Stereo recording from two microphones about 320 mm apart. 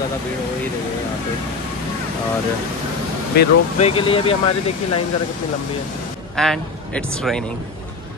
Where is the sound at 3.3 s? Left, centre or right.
Centre.